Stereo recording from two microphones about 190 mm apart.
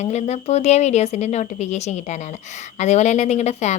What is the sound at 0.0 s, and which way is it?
A woman's voice, 35° left (ahead or behind).